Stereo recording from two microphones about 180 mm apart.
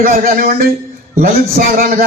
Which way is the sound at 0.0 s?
50° right (ahead or behind).